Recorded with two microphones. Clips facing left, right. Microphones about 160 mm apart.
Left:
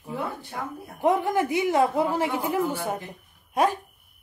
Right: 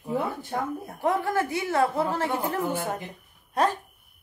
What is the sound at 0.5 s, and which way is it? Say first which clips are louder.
Speech: right 6 dB; 40° right (ahead or behind).